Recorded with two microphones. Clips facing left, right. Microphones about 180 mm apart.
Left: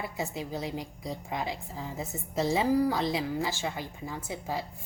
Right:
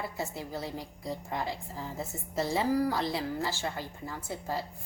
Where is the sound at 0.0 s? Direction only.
15° left (ahead or behind).